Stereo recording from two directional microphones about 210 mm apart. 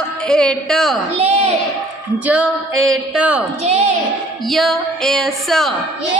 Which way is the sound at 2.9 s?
5° right (ahead or behind).